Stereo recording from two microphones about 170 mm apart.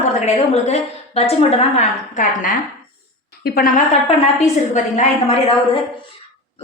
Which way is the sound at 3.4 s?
60° left (ahead or behind).